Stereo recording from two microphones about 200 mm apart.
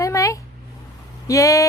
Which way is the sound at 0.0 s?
15° left (ahead or behind).